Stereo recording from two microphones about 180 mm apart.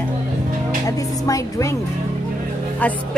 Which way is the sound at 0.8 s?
20° left (ahead or behind).